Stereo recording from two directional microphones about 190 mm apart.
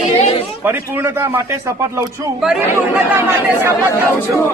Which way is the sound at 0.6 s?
10° right (ahead or behind).